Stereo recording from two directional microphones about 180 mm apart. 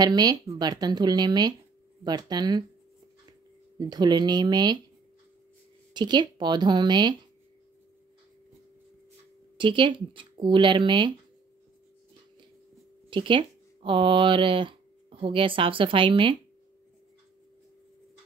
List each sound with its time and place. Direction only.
0.0 s speech: 20° right (ahead or behind)
5.9 s speech: 25° right (ahead or behind)
9.6 s speech: 25° right (ahead or behind)
13.1 s speech: 25° right (ahead or behind)